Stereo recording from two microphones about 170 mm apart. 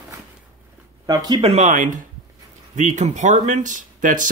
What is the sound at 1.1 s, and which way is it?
Speech, 25° right (ahead or behind).